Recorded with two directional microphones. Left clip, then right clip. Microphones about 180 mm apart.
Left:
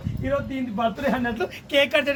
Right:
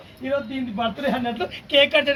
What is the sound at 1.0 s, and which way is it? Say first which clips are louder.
Speech: even; centre (ahead or behind).